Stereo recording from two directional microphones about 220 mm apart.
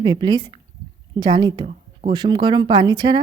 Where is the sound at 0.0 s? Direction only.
20° right (ahead or behind).